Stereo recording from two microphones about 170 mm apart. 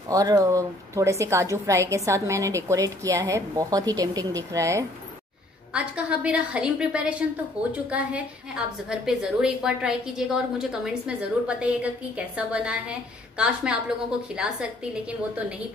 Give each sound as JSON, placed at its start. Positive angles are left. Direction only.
{"t": 0.1, "sound": "a woman's voice", "side_deg": -20}
{"t": 5.7, "sound": "a woman's voice", "side_deg": -5}